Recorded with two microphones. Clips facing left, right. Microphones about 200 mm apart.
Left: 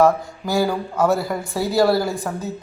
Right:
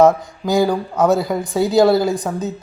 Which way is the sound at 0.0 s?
20° right (ahead or behind).